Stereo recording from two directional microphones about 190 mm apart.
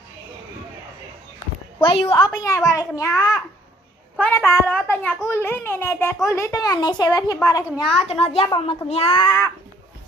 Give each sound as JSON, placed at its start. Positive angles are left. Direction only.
{"t": 1.8, "sound": "a woman's voice", "side_deg": 30}
{"t": 7.9, "sound": "a child's voice", "side_deg": 30}